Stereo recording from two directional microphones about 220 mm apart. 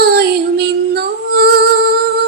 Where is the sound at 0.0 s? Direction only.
45° right (ahead or behind).